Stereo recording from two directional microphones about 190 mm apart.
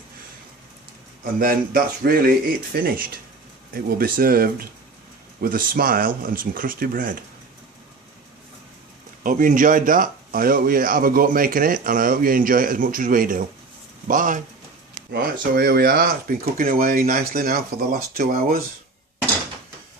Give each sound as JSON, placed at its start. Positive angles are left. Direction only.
{"t": 1.2, "sound": "speech", "side_deg": -50}
{"t": 9.2, "sound": "speech", "side_deg": -45}